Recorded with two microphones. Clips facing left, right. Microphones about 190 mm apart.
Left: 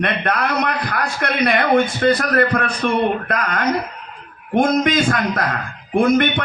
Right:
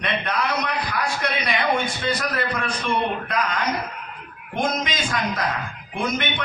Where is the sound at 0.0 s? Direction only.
55° left (ahead or behind).